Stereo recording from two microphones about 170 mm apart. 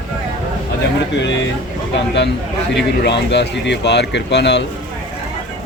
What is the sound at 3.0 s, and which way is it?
Speech, 90° left.